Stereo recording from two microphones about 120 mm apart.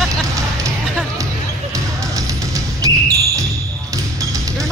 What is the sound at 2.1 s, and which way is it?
Music, 30° right (ahead or behind).